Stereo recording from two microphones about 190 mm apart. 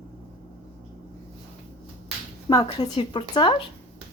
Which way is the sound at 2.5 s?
20° left (ahead or behind).